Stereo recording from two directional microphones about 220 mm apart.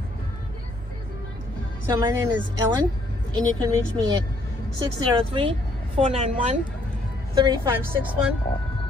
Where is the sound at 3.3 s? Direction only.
20° right (ahead or behind).